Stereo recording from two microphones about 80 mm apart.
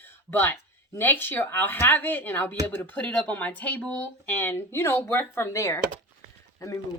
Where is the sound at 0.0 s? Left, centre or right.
Left.